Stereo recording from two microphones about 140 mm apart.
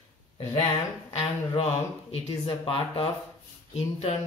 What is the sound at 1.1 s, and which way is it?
Speech, 45° left (ahead or behind).